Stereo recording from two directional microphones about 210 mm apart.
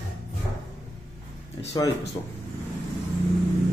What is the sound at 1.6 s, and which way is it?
Speech, 20° left (ahead or behind).